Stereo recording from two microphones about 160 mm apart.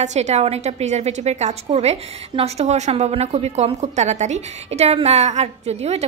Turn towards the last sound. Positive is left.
turn(degrees=-40)  # may be behind; listen again after turning